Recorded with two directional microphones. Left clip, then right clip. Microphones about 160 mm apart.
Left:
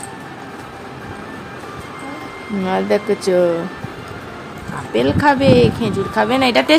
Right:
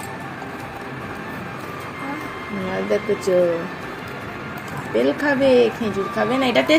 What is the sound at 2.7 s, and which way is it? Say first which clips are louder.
Speech: left 5 dB; 25° left (ahead or behind).